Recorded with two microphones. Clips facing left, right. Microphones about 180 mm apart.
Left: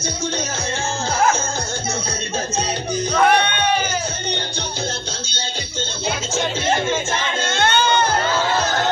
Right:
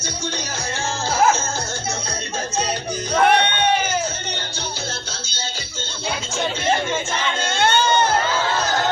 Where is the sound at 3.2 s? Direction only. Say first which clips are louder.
Right 1 dB; 25° right (ahead or behind).